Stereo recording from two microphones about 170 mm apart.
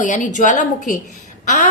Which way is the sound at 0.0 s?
45° left (ahead or behind).